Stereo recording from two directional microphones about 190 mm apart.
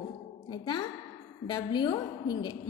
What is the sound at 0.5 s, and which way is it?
A woman's voice, 25° left (ahead or behind).